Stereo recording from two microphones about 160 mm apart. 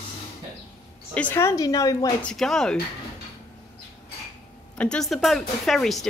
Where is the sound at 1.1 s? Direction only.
10° left (ahead or behind).